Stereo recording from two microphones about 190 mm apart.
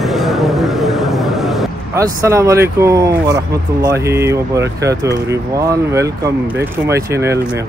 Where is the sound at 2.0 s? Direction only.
15° right (ahead or behind).